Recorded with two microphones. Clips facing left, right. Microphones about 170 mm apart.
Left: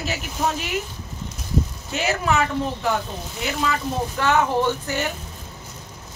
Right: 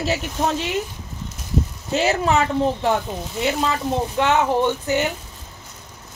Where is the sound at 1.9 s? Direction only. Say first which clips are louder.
Right 4 dB; 30° right (ahead or behind).